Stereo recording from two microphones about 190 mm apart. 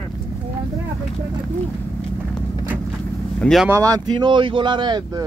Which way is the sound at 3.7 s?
20° right (ahead or behind).